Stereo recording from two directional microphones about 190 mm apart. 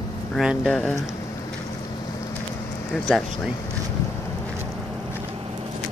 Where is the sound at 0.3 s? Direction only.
Centre (ahead or behind).